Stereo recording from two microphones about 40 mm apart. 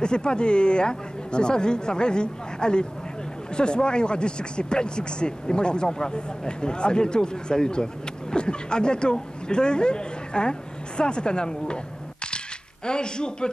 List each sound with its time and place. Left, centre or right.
0.0 s speech: left